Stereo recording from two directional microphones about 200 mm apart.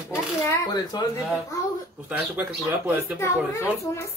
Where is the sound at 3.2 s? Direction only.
15° left (ahead or behind).